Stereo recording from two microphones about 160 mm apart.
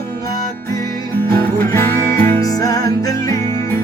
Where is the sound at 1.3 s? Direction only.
15° left (ahead or behind).